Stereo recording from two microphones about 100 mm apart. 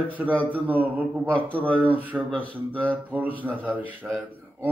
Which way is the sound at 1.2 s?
15° left (ahead or behind).